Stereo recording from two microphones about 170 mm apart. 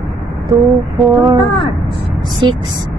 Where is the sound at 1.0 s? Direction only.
Centre (ahead or behind).